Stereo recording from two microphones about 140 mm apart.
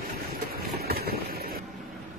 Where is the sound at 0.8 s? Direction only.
90° right.